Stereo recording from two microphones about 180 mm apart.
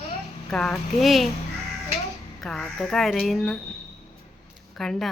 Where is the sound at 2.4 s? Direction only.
5° left (ahead or behind).